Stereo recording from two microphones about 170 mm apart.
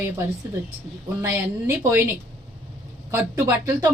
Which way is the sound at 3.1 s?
15° right (ahead or behind).